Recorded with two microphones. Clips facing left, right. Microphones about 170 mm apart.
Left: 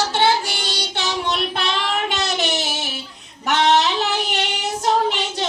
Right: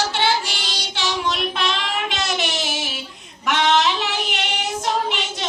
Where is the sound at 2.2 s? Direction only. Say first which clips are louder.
Left 2 dB; 35° left (ahead or behind).